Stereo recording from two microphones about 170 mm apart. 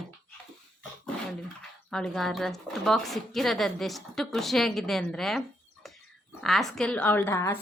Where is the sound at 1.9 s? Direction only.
5° left (ahead or behind).